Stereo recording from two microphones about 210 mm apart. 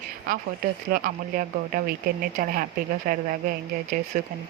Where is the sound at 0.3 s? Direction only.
45° right (ahead or behind).